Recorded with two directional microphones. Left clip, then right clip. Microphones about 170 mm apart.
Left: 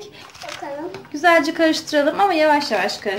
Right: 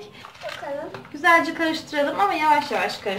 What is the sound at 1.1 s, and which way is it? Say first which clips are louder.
A woman's voice: left 2 dB; 40° left (ahead or behind).